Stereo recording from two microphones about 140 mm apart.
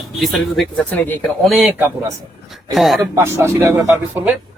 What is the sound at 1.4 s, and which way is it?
Speech, centre (ahead or behind).